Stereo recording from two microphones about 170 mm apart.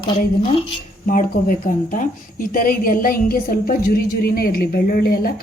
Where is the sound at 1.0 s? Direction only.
50° left (ahead or behind).